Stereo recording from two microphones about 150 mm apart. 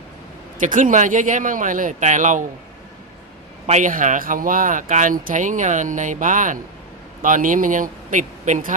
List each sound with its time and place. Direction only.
0.6 s speech: 60° right (ahead or behind)
3.7 s speech: 60° right (ahead or behind)